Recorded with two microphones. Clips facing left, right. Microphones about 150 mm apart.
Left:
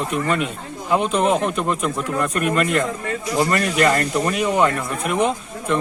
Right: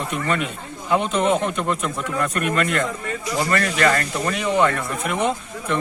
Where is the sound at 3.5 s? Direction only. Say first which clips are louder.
Even; 15° left (ahead or behind).